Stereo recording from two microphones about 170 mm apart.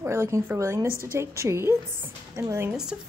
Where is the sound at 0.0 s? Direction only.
15° right (ahead or behind).